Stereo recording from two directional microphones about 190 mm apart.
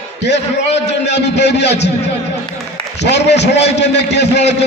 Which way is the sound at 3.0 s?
65° left (ahead or behind).